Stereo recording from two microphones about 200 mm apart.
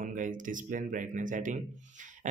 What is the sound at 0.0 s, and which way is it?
Speech, 40° right (ahead or behind).